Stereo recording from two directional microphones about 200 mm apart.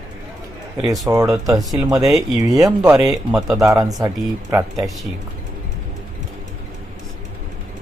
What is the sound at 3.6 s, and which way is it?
Speech, 15° right (ahead or behind).